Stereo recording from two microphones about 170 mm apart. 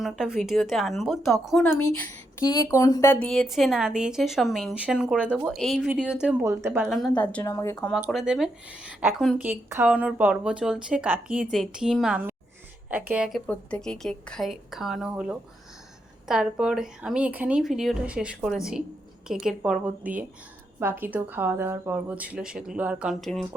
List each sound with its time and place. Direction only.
0.0 s a woman's voice: 5° right (ahead or behind)
2.4 s a woman's voice: 20° left (ahead or behind); by 6.8 s 15° right (ahead or behind)
6.8 s a woman's voice: centre (ahead or behind); by 7.8 s 15° left (ahead or behind)
7.8 s a woman's voice: centre (ahead or behind)
13.5 s a woman's voice: 5° left (ahead or behind)